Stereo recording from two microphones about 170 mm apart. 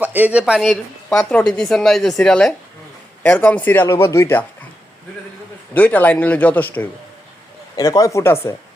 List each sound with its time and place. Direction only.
0.0 s a woman's voice: 10° right (ahead or behind); by 4.4 s 15° left (ahead or behind)
5.7 s speech: 10° left (ahead or behind)